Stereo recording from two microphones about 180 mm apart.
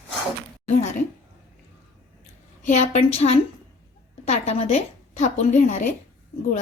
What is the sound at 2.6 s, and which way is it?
A woman's voice, 40° left (ahead or behind).